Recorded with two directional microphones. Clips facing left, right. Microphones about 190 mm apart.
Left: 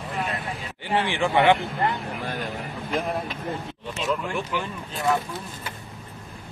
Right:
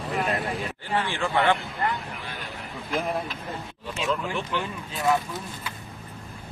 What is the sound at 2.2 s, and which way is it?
Vehicle, 45° left (ahead or behind).